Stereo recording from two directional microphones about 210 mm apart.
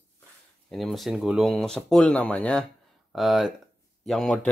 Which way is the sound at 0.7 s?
Centre (ahead or behind).